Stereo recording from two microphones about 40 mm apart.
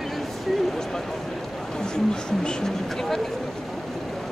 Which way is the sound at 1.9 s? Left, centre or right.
Centre.